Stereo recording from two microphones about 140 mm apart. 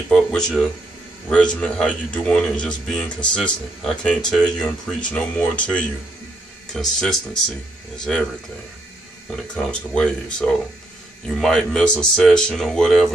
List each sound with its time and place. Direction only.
0.1 s speech: 5° left (ahead or behind)
9.3 s speech: 5° left (ahead or behind)